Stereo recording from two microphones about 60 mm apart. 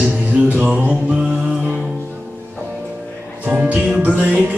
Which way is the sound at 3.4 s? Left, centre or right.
Right.